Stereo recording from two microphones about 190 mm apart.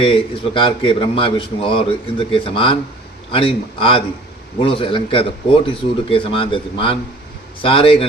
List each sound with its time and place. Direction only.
0.0 s a man's voice: 25° left (ahead or behind)